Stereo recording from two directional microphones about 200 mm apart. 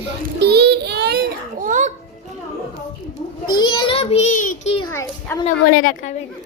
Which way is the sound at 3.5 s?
20° left (ahead or behind).